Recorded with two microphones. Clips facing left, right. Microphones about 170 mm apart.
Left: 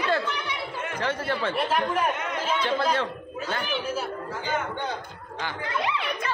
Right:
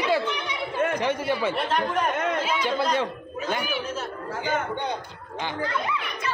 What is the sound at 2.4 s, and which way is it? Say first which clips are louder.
A man's voice: even; 10° right (ahead or behind).